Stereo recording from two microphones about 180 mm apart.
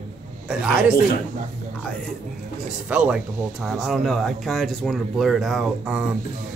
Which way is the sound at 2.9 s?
5° right (ahead or behind).